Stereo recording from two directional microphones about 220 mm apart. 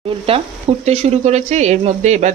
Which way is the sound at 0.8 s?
30° right (ahead or behind).